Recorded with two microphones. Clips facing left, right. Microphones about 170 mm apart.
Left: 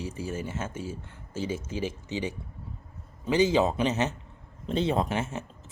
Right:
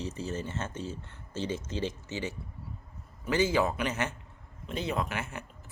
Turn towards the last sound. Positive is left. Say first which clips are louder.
# left 5 dB
turn(degrees=25)  # may be behind; listen again after turning